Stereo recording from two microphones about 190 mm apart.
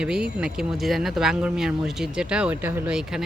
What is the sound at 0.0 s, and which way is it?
Speech, 5° right (ahead or behind).